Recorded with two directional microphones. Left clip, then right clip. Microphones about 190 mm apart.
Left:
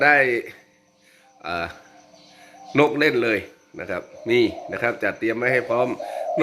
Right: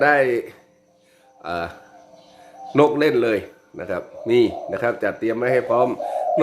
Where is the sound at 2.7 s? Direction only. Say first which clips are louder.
Right 2 dB; centre (ahead or behind).